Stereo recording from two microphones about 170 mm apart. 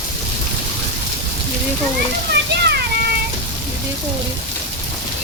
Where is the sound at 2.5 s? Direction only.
80° right.